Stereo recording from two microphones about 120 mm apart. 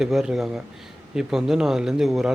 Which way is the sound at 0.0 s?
5° right (ahead or behind).